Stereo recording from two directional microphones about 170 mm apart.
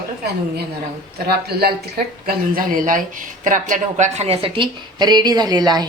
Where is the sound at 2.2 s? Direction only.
55° right (ahead or behind); by 5.9 s 25° right (ahead or behind).